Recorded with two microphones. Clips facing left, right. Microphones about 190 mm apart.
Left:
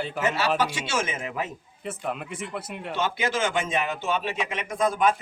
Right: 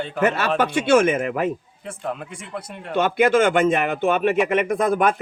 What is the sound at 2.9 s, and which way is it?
Speech, 55° right (ahead or behind).